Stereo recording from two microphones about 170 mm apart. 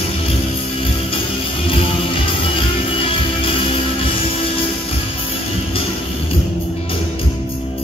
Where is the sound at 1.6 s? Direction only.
30° left (ahead or behind).